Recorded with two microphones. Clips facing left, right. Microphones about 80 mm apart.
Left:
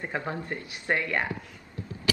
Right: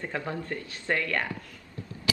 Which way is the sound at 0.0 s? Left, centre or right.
Left.